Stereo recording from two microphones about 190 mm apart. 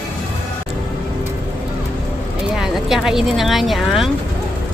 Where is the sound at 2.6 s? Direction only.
Centre (ahead or behind).